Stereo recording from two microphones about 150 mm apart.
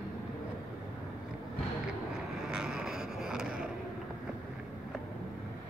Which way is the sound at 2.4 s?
5° right (ahead or behind).